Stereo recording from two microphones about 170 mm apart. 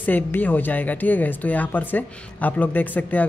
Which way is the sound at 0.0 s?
10° left (ahead or behind).